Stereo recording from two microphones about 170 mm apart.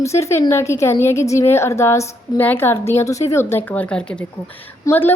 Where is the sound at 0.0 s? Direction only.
15° left (ahead or behind).